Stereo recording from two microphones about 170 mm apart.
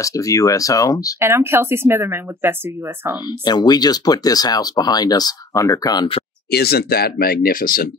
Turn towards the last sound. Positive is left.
turn(degrees=55)  # may be behind; listen again after turning